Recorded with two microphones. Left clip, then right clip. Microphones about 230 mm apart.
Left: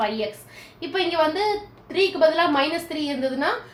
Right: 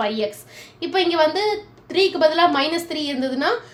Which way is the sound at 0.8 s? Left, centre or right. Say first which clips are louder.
Right 4 dB; right.